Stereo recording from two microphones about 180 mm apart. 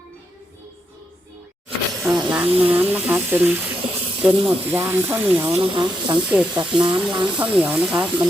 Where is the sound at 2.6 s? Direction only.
10° right (ahead or behind).